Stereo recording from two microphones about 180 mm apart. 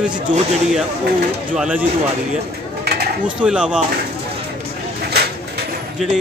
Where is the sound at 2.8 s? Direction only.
65° right (ahead or behind).